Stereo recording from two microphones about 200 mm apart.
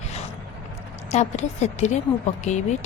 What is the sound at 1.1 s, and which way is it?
Speech, 35° left (ahead or behind).